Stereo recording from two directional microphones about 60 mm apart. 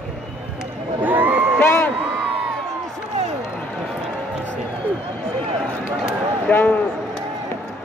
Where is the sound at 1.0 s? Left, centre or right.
Right.